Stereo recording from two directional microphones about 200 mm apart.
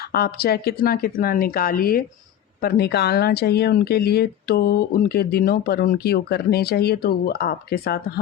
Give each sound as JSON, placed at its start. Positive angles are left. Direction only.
{"t": 0.1, "sound": "speech", "side_deg": 50}